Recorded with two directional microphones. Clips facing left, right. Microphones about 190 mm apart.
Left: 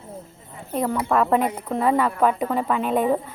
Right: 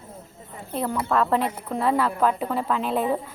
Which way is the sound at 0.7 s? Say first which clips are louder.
Left 3 dB; 10° left (ahead or behind).